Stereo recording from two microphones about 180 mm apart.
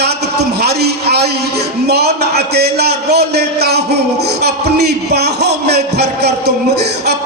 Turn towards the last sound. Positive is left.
turn(degrees=-65)  # may be behind; listen again after turning